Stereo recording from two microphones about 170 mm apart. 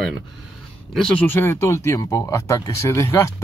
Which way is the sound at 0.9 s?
5° left (ahead or behind).